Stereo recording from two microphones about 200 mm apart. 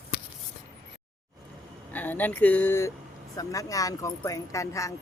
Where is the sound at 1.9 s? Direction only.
10° left (ahead or behind).